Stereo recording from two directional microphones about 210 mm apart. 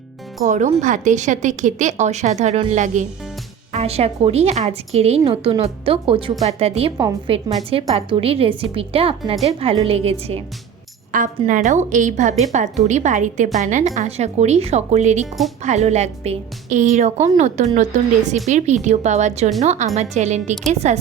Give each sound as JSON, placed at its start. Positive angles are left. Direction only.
{"t": 0.4, "sound": "a woman's voice", "side_deg": -35}
{"t": 6.9, "sound": "a woman's voice", "side_deg": -15}
{"t": 7.3, "sound": "a woman's voice", "side_deg": -25}